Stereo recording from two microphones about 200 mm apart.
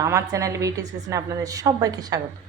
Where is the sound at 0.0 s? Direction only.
15° right (ahead or behind).